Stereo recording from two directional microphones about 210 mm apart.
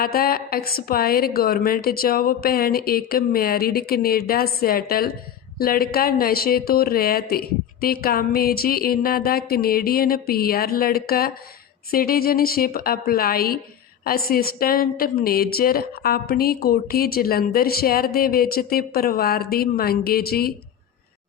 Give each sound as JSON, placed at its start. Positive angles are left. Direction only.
{"t": 0.0, "sound": "a woman's voice", "side_deg": 45}